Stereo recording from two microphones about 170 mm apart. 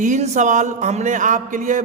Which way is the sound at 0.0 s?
45° right (ahead or behind).